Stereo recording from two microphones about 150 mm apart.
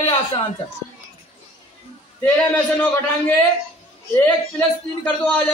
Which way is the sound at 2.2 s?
15° left (ahead or behind).